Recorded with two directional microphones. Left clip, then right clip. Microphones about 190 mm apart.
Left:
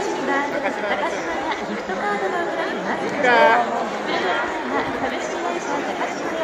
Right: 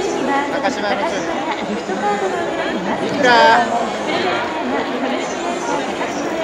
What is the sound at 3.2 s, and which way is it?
Speech, 15° right (ahead or behind).